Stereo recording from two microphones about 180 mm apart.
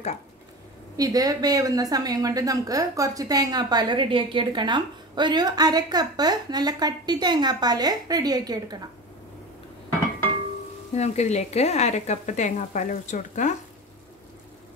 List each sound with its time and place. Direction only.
0.9 s a woman's voice: 20° right (ahead or behind)
11.0 s speech: 40° left (ahead or behind)